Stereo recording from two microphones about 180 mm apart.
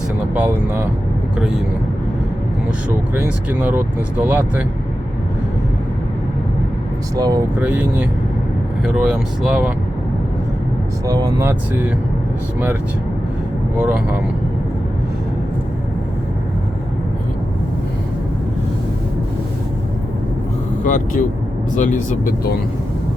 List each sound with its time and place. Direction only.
0.3 s speech: 10° right (ahead or behind)
3.2 s speech: 10° right (ahead or behind)
7.2 s speech: 20° right (ahead or behind)
7.6 s speech: 10° right (ahead or behind)
11.0 s speech: 20° right (ahead or behind)
13.7 s speech: 5° right (ahead or behind)
20.8 s speech: 45° left (ahead or behind)